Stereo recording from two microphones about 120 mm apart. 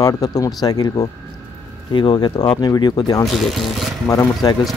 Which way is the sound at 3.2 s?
Centre (ahead or behind).